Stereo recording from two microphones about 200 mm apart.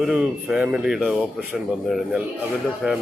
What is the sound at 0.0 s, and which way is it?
Speech, 5° right (ahead or behind).